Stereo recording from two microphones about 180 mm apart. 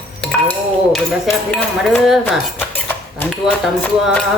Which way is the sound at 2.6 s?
10° left (ahead or behind).